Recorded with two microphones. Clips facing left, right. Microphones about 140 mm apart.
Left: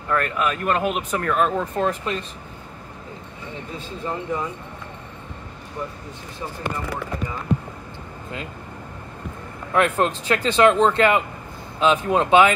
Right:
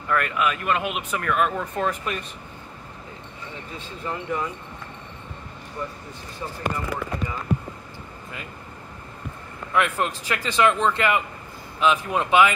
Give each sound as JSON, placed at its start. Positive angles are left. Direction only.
{"t": 0.1, "sound": "speech", "side_deg": 35}
{"t": 4.0, "sound": "speech", "side_deg": 25}
{"t": 9.7, "sound": "speech", "side_deg": 35}